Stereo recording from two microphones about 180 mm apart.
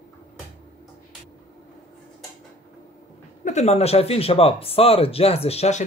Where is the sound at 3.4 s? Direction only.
40° left (ahead or behind).